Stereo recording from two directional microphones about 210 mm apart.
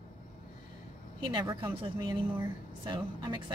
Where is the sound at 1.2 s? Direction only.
20° right (ahead or behind).